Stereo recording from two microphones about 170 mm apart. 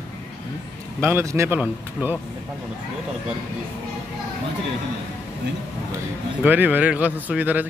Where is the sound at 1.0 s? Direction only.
15° right (ahead or behind).